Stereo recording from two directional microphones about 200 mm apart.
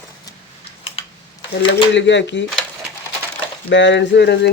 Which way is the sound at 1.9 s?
65° left (ahead or behind).